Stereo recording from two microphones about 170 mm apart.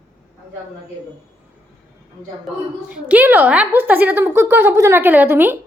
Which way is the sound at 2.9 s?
10° right (ahead or behind).